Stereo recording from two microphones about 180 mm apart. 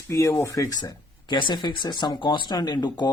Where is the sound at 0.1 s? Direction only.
15° left (ahead or behind).